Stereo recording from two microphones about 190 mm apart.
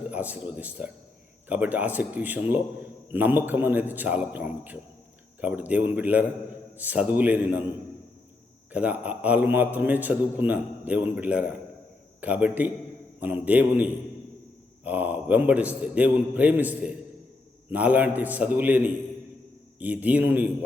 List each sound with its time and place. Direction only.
0.1 s a man's voice: 10° right (ahead or behind)
8.7 s a man's voice: 5° right (ahead or behind)
14.8 s a man's voice: 10° right (ahead or behind)